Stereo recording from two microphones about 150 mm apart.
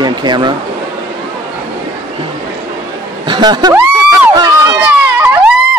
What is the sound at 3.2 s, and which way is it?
Speech, 30° right (ahead or behind).